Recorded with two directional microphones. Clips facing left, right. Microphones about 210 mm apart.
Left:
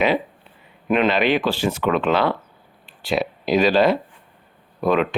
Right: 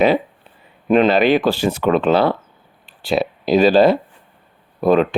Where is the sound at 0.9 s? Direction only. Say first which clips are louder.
Right 5 dB; 35° right (ahead or behind).